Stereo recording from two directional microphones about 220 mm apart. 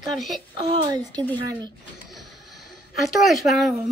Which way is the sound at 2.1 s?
Centre (ahead or behind).